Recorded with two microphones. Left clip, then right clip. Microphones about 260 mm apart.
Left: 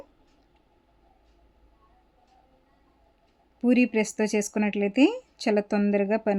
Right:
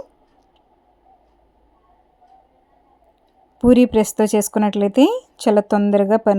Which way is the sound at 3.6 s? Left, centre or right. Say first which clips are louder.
Right 10 dB; right.